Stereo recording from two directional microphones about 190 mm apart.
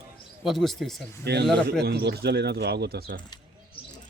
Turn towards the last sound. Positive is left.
turn(degrees=-60)  # may be behind; listen again after turning